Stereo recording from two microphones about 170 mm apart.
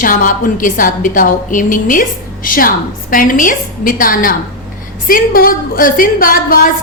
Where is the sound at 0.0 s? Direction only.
50° left (ahead or behind).